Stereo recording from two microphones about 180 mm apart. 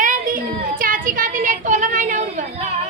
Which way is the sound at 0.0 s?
50° right (ahead or behind).